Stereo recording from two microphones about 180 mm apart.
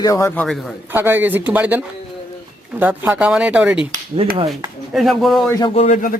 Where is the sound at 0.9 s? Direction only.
10° right (ahead or behind).